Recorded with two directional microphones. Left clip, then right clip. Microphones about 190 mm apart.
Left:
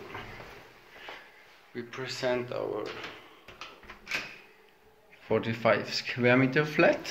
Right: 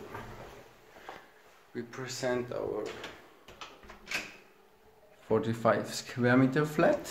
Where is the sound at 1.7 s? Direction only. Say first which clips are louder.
Left 3 dB; 15° right (ahead or behind).